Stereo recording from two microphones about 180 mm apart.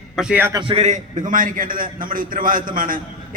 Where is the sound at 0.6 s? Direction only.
35° right (ahead or behind).